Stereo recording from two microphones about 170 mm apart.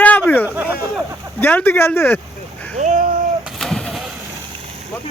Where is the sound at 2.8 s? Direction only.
45° right (ahead or behind).